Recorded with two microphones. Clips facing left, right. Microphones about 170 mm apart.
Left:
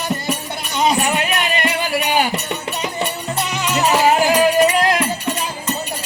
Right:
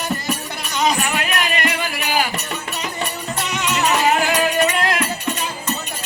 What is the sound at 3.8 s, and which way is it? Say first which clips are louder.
Music: left 3 dB; 30° left (ahead or behind).